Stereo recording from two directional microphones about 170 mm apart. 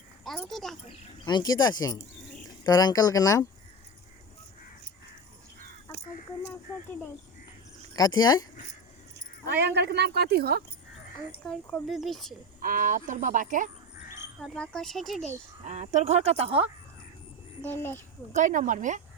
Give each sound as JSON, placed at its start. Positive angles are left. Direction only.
{"t": 0.3, "sound": "speech", "side_deg": 0}
{"t": 1.2, "sound": "speech", "side_deg": 25}
{"t": 7.9, "sound": "speech", "side_deg": 25}
{"t": 9.1, "sound": "speech", "side_deg": -80}
{"t": 11.4, "sound": "speech", "side_deg": 0}
{"t": 12.6, "sound": "speech", "side_deg": -55}
{"t": 14.4, "sound": "speech", "side_deg": 5}
{"t": 15.6, "sound": "speech", "side_deg": -40}
{"t": 17.6, "sound": "speech", "side_deg": 10}
{"t": 18.3, "sound": "speech", "side_deg": -50}